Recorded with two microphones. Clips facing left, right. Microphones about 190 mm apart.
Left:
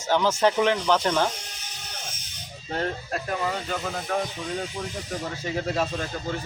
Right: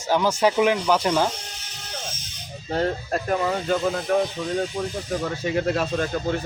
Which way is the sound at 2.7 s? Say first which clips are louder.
Right 5 dB; 45° right (ahead or behind).